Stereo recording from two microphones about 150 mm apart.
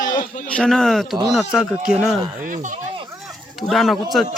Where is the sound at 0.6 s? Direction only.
5° left (ahead or behind).